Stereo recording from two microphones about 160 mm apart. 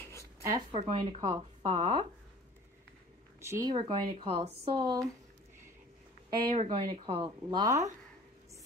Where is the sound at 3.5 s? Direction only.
25° right (ahead or behind).